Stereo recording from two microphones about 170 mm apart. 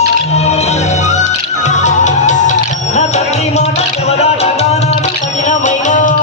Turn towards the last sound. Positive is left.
turn(degrees=45)  # may be behind; listen again after turning